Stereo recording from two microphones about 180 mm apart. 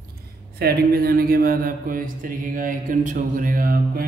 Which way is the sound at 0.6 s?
60° right (ahead or behind).